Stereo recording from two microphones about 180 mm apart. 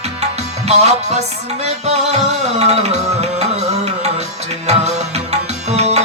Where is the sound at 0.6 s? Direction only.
35° right (ahead or behind).